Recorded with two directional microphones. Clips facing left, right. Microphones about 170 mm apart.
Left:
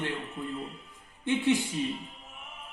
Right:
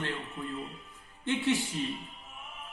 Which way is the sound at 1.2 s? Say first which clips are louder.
Left 3 dB; 15° left (ahead or behind).